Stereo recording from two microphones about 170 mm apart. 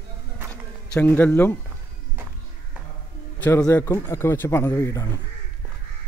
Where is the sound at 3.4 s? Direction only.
15° left (ahead or behind).